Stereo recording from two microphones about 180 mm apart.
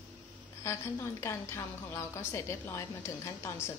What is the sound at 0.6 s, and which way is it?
A woman's voice, 15° left (ahead or behind).